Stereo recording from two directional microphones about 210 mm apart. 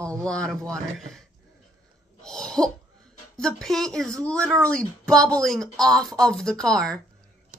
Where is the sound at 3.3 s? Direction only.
5° left (ahead or behind).